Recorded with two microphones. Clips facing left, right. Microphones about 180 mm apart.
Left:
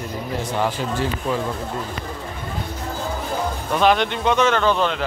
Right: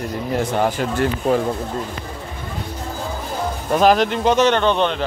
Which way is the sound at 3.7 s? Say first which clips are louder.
Right 3 dB; 40° right (ahead or behind).